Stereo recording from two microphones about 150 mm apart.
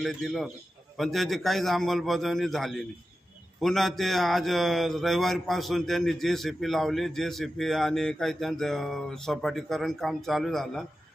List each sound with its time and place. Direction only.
0.0 s speech: centre (ahead or behind)